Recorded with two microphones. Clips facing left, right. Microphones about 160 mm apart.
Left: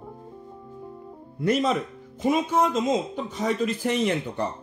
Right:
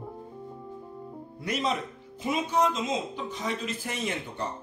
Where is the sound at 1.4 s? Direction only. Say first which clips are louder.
Left 7 dB; 50° left (ahead or behind).